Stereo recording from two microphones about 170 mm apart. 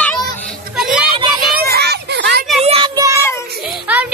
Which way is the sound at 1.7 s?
75° right (ahead or behind).